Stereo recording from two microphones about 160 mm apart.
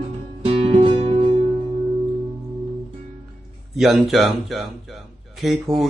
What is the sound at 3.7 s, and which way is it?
Speech, 5° right (ahead or behind).